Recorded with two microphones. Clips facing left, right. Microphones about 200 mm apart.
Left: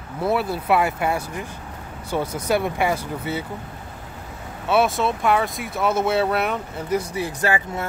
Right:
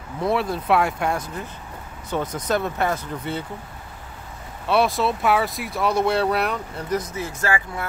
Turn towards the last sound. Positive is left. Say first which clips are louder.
# left 2 dB
turn(degrees=20)  # may be behind; listen again after turning